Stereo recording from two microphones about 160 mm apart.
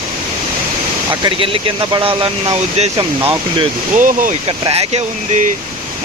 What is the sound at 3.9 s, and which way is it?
Speech, 55° right (ahead or behind).